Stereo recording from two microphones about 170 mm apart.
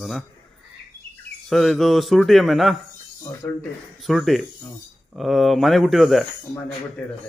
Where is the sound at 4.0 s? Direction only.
Centre (ahead or behind).